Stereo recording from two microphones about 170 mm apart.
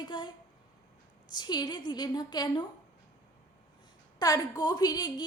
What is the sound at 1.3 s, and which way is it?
Speech, 25° left (ahead or behind).